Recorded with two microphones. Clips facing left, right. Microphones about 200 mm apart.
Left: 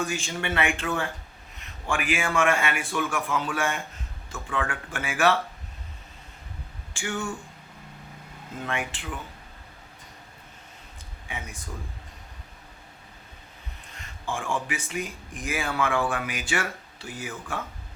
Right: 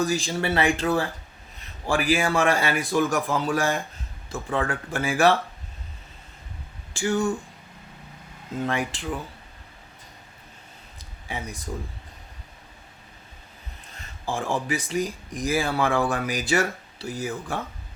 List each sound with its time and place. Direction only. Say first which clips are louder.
0.0 s speech: right 5 dB; 35° right (ahead or behind)
6.9 s speech: right 8 dB; 35° right (ahead or behind)
8.6 s speech: right 4 dB; 35° right (ahead or behind)
10.9 s a sound: right 4 dB; 35° right (ahead or behind)
14.3 s speech: right 3 dB; 35° right (ahead or behind)